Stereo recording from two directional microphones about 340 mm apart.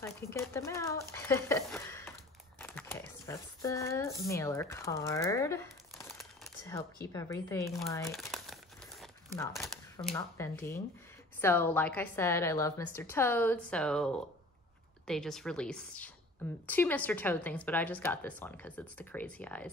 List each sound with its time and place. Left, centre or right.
0.0 s speech: centre
2.6 s crumpling: centre
9.0 s speech: centre